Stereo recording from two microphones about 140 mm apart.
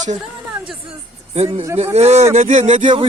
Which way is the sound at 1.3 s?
45° right (ahead or behind).